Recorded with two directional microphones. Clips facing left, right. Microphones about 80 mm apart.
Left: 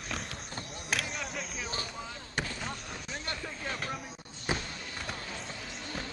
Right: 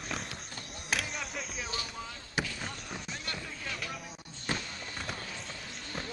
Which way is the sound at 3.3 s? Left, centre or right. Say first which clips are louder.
Left 3 dB; left.